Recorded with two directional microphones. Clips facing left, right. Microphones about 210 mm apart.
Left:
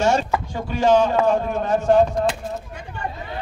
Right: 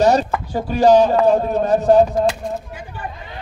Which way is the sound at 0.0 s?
35° right (ahead or behind).